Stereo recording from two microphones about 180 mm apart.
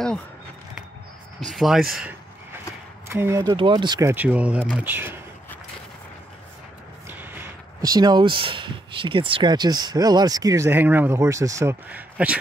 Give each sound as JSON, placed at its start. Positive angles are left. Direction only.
{"t": 1.5, "sound": "speech", "side_deg": 0}
{"t": 3.1, "sound": "speech", "side_deg": -15}
{"t": 4.1, "sound": "speech", "side_deg": -10}
{"t": 7.1, "sound": "a sound", "side_deg": -10}
{"t": 7.8, "sound": "speech", "side_deg": -20}